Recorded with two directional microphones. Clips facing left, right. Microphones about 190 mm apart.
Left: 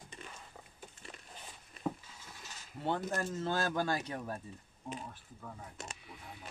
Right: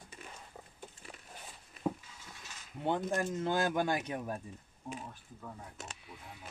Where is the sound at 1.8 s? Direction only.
5° right (ahead or behind).